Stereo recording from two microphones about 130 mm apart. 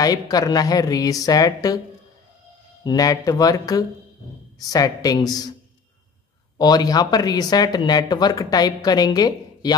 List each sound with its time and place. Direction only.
0.0 s a woman's voice: 30° left (ahead or behind)
2.8 s a woman's voice: 30° left (ahead or behind)
6.6 s speech: 30° left (ahead or behind)